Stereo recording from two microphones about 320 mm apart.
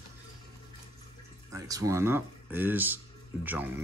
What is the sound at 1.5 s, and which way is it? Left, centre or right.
Speech, centre.